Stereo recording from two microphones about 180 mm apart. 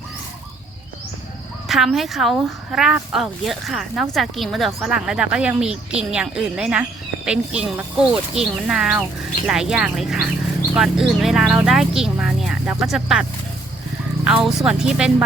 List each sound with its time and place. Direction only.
1.6 s speech: centre (ahead or behind)
14.3 s speech: 5° right (ahead or behind)